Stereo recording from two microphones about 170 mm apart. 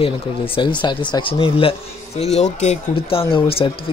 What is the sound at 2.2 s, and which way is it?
A man's voice, 40° left (ahead or behind).